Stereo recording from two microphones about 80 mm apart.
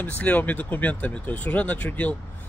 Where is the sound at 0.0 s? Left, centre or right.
Centre.